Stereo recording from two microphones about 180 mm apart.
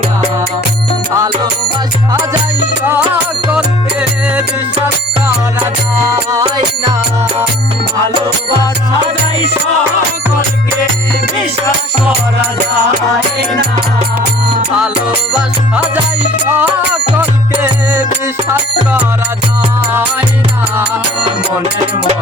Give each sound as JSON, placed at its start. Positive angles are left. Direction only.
{"t": 1.1, "sound": "music", "side_deg": -20}
{"t": 2.8, "sound": "music", "side_deg": -10}
{"t": 15.3, "sound": "music", "side_deg": -5}